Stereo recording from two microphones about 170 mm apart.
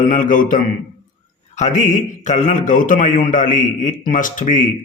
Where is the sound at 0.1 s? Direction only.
50° left (ahead or behind).